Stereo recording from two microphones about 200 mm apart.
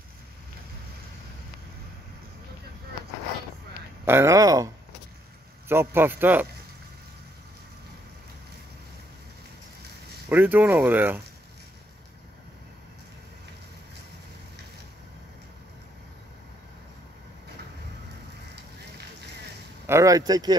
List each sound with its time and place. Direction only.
4.0 s speech: 10° right (ahead or behind)
5.7 s speech: 10° right (ahead or behind)
10.3 s speech: 10° right (ahead or behind)
19.9 s speech: 15° right (ahead or behind)